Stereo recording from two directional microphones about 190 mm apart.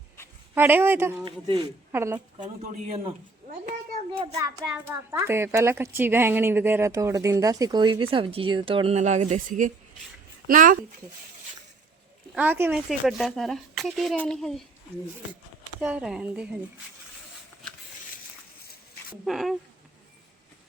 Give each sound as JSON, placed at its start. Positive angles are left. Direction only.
{"t": 0.5, "sound": "a woman's voice", "side_deg": -10}
{"t": 1.2, "sound": "speech", "side_deg": -25}
{"t": 1.9, "sound": "a woman's voice", "side_deg": -10}
{"t": 2.4, "sound": "speech", "side_deg": -40}
{"t": 4.4, "sound": "a woman's voice", "side_deg": -15}
{"t": 12.3, "sound": "a woman's voice", "side_deg": -10}
{"t": 15.8, "sound": "speech", "side_deg": -5}
{"t": 19.2, "sound": "speech", "side_deg": 0}